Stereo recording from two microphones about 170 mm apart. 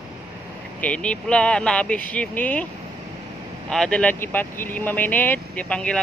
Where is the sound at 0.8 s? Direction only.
5° left (ahead or behind).